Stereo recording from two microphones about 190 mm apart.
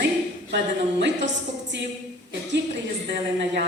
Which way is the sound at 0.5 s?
70° right (ahead or behind).